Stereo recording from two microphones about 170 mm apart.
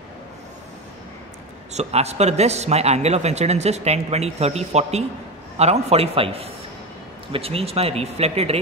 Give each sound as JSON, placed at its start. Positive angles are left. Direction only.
{"t": 1.7, "sound": "a man's voice", "side_deg": -40}